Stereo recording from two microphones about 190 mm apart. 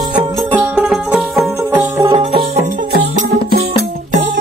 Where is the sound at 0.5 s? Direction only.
10° right (ahead or behind).